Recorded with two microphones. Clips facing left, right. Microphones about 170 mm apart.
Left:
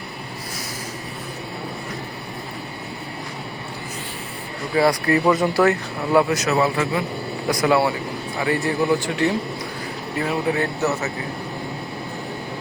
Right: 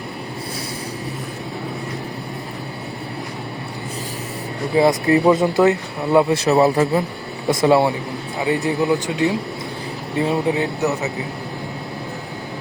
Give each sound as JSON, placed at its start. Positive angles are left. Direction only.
{"t": 4.7, "sound": "a man's voice", "side_deg": -20}